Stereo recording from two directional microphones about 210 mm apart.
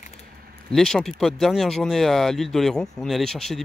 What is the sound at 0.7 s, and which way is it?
Speech, centre (ahead or behind).